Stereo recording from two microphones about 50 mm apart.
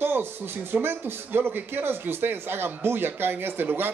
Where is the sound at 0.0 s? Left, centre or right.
Right.